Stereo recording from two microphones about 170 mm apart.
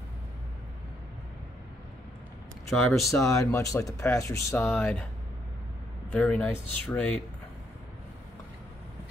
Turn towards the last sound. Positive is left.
turn(degrees=10)  # may be behind; listen again after turning